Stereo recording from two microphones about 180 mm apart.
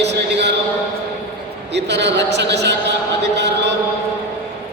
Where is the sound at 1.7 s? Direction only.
75° right (ahead or behind).